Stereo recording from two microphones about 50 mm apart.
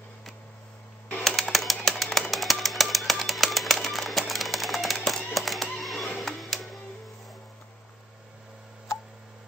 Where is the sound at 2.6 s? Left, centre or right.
Centre.